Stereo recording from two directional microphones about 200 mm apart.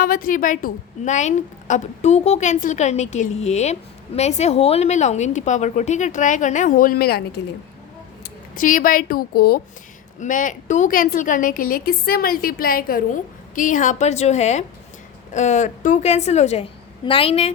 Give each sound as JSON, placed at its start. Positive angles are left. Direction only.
{"t": 0.0, "sound": "a woman's voice", "side_deg": 45}